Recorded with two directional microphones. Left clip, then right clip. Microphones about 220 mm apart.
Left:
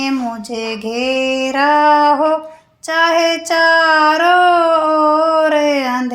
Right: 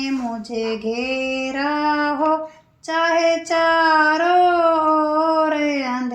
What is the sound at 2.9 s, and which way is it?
Child singing, 45° left (ahead or behind).